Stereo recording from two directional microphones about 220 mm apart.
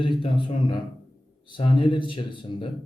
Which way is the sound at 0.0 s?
20° left (ahead or behind).